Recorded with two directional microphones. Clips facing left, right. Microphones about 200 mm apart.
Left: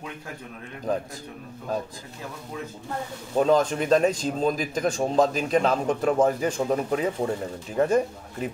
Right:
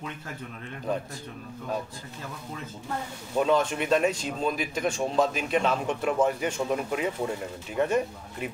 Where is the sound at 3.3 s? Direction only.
35° left (ahead or behind).